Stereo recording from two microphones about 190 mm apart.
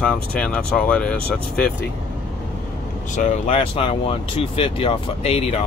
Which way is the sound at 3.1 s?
40° left (ahead or behind).